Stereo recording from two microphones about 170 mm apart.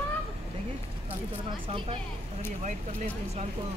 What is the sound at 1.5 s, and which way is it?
Speech, 30° right (ahead or behind).